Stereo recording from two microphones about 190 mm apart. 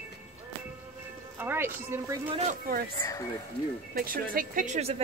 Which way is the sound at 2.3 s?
35° right (ahead or behind).